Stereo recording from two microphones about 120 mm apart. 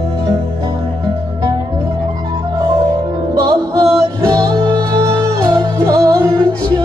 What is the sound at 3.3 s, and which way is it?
Music, 35° right (ahead or behind).